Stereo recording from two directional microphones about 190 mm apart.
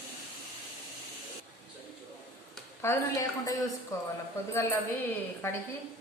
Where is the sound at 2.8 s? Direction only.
15° left (ahead or behind).